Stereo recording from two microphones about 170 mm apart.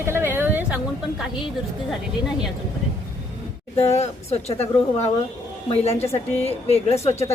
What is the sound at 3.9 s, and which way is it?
A woman's voice, 40° left (ahead or behind).